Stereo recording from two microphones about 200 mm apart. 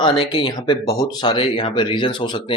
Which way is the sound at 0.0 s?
20° left (ahead or behind).